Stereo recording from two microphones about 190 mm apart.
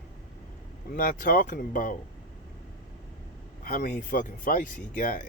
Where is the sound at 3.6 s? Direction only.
50° left (ahead or behind).